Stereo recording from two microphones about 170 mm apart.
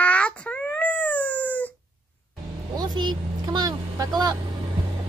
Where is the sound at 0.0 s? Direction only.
5° left (ahead or behind).